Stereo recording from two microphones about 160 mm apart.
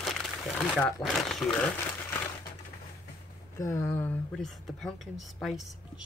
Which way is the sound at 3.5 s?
15° left (ahead or behind).